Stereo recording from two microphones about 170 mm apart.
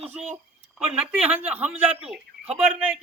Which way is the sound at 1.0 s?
5° right (ahead or behind).